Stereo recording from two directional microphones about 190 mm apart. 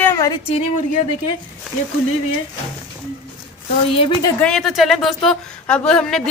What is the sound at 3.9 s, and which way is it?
Speech, 30° left (ahead or behind).